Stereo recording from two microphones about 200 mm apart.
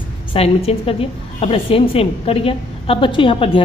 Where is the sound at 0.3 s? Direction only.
30° left (ahead or behind).